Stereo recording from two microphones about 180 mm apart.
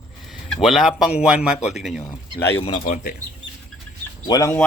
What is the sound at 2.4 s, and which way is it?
Speech, 15° left (ahead or behind).